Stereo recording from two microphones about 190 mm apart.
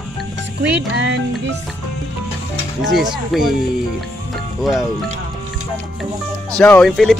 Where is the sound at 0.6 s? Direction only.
65° right (ahead or behind).